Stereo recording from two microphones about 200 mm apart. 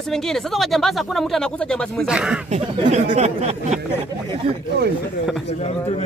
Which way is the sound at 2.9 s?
35° right (ahead or behind).